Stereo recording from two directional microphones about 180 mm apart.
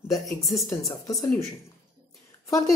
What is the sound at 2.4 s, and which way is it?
Speech, 20° left (ahead or behind).